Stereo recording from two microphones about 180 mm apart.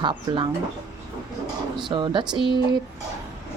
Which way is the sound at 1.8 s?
25° right (ahead or behind).